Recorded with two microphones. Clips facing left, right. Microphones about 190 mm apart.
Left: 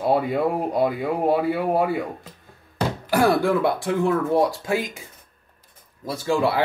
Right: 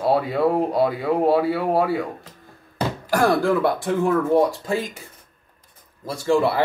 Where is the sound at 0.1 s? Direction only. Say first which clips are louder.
Right 2 dB; centre (ahead or behind).